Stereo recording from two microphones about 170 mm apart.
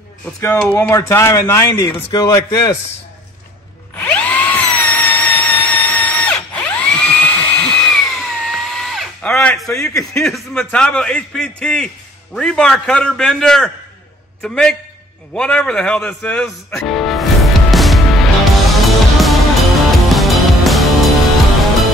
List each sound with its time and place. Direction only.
0.2 s speech: 15° left (ahead or behind)
4.1 s a sound: 10° left (ahead or behind)
10.1 s a man's voice: centre (ahead or behind)
15.3 s music: 5° left (ahead or behind)